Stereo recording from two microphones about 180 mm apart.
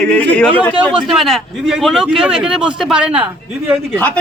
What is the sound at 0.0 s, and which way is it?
A man's voice, 5° left (ahead or behind).